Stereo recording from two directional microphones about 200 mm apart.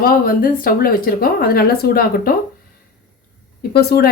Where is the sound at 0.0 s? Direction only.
45° left (ahead or behind).